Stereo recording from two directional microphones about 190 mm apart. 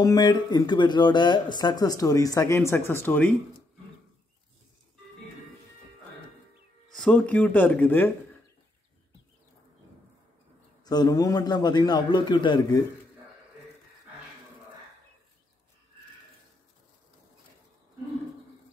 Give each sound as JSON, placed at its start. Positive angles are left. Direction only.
{"t": 0.0, "sound": "speech", "side_deg": 20}
{"t": 6.9, "sound": "speech", "side_deg": 5}
{"t": 10.8, "sound": "speech", "side_deg": 20}